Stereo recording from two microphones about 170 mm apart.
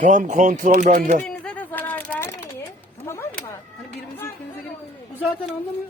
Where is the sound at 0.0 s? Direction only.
50° right (ahead or behind).